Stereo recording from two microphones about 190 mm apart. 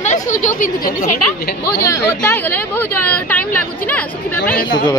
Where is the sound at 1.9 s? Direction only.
10° left (ahead or behind).